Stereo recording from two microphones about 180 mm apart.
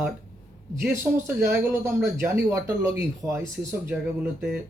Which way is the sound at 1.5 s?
10° right (ahead or behind).